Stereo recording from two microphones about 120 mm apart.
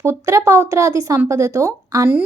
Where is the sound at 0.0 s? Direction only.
25° right (ahead or behind).